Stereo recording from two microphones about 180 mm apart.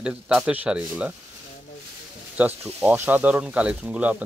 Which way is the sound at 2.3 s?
10° right (ahead or behind).